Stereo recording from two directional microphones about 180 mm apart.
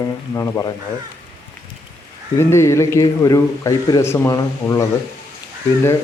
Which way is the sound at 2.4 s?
15° left (ahead or behind).